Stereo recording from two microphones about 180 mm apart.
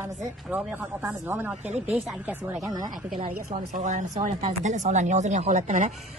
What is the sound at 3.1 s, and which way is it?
Speech, 40° right (ahead or behind).